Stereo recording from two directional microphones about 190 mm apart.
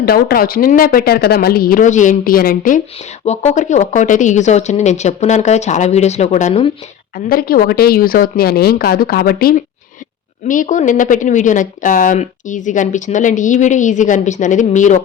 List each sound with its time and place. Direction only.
0.0 s a woman's voice: 55° left (ahead or behind); by 6.7 s 35° left (ahead or behind)
7.3 s a woman's voice: 50° left (ahead or behind)